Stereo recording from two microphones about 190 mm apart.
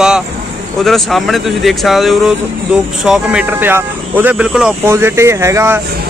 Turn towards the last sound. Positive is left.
turn(degrees=-15)  # may be behind; listen again after turning